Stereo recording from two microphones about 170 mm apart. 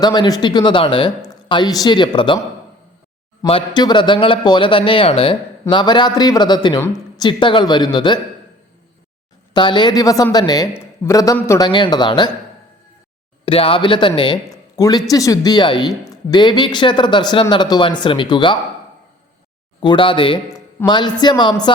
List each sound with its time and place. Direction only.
0.0 s speech: 25° left (ahead or behind)
3.4 s speech: 30° left (ahead or behind)
9.5 s speech: 25° left (ahead or behind)
13.4 s speech: 30° left (ahead or behind)
19.8 s speech: 30° left (ahead or behind)